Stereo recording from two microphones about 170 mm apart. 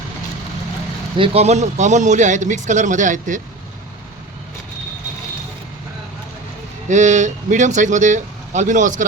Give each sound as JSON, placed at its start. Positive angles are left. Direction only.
{"t": 1.1, "sound": "speech", "side_deg": -35}
{"t": 6.8, "sound": "speech", "side_deg": -45}